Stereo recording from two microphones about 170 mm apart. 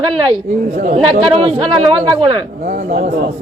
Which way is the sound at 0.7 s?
45° right (ahead or behind).